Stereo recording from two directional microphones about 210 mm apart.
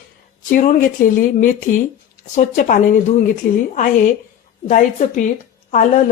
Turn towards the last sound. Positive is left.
turn(degrees=35)  # may be behind; listen again after turning